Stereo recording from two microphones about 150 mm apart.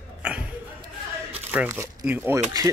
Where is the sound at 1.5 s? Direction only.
15° right (ahead or behind).